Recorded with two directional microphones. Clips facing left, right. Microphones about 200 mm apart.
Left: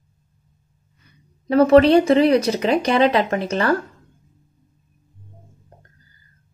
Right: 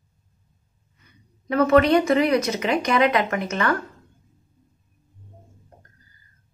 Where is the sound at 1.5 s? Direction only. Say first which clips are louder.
Left 5 dB; 30° left (ahead or behind).